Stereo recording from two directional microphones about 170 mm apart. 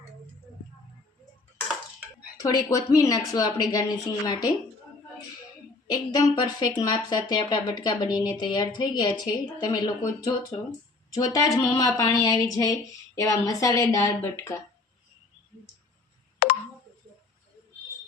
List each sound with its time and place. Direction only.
2.4 s speech: 20° left (ahead or behind)
5.9 s speech: 25° left (ahead or behind)
16.4 s a sound: 60° left (ahead or behind)